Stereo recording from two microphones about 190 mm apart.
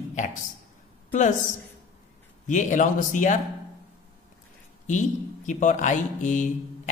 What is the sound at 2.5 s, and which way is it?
Speech, 40° left (ahead or behind).